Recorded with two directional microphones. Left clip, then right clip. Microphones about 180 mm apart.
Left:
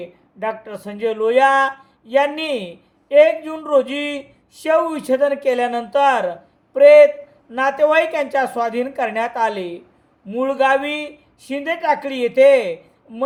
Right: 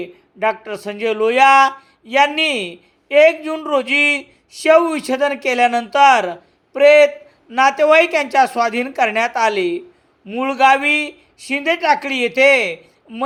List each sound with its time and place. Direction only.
0.0 s speech: 20° right (ahead or behind)